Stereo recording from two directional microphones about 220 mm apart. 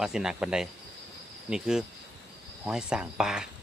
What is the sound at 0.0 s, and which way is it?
Speech, 5° right (ahead or behind).